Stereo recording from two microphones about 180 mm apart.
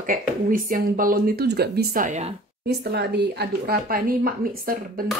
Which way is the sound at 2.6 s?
65° right (ahead or behind).